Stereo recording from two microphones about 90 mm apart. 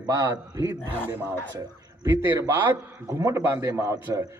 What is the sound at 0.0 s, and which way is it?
Speech, 50° right (ahead or behind).